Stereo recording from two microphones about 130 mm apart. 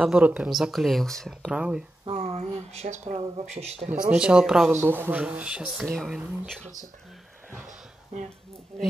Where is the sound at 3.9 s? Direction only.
10° right (ahead or behind).